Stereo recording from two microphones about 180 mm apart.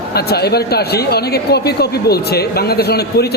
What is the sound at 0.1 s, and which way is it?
Speech, 60° left (ahead or behind).